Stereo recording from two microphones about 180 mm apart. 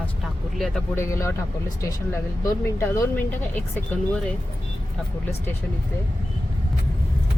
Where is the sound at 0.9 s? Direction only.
15° left (ahead or behind).